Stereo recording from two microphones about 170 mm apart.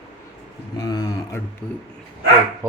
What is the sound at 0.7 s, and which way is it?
Speech, 25° left (ahead or behind).